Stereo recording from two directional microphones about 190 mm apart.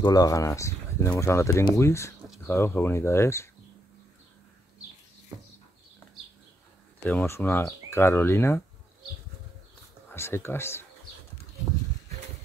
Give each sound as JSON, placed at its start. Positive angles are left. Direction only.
{"t": 0.0, "sound": "speech", "side_deg": 20}
{"t": 5.3, "sound": "a sound", "side_deg": -10}
{"t": 7.1, "sound": "speech", "side_deg": 10}
{"t": 10.1, "sound": "speech", "side_deg": 15}